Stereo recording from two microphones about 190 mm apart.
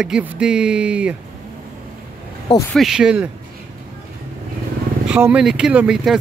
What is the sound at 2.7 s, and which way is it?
Speech, centre (ahead or behind).